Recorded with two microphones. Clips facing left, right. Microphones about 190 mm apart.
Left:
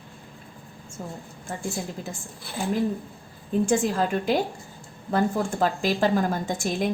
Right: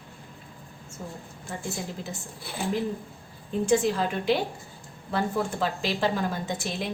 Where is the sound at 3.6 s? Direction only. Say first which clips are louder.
Right 2 dB; 45° left (ahead or behind).